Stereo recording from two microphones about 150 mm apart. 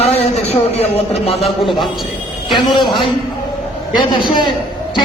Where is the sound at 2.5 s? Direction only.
30° left (ahead or behind).